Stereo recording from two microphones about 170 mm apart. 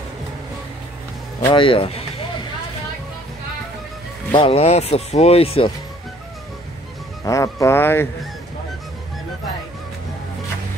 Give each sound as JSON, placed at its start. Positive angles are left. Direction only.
{"t": 1.5, "sound": "speech", "side_deg": 30}
{"t": 4.3, "sound": "speech", "side_deg": 30}
{"t": 7.2, "sound": "speech", "side_deg": 20}